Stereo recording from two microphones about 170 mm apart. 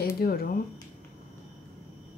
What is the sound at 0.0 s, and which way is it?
Speech, 65° left (ahead or behind).